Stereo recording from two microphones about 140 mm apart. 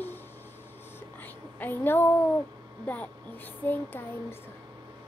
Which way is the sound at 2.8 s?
10° left (ahead or behind).